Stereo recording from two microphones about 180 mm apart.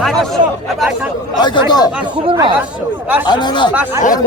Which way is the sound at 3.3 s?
25° left (ahead or behind).